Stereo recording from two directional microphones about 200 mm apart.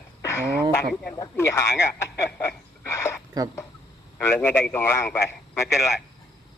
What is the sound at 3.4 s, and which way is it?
Speech, 20° right (ahead or behind).